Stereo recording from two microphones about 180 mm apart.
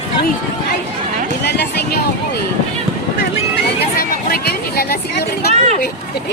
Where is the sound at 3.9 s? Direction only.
60° left (ahead or behind).